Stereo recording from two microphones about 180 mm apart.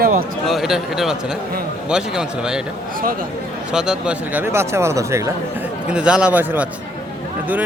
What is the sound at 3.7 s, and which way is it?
A man's voice, 5° right (ahead or behind).